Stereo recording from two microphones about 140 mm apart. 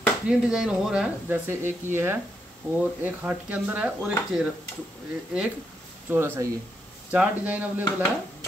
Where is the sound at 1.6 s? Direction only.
15° right (ahead or behind).